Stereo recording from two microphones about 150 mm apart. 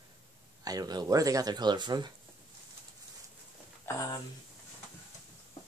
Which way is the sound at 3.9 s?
15° left (ahead or behind).